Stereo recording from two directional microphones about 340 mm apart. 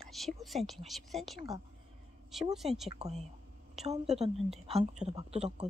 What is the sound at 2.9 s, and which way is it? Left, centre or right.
A woman's voice, centre.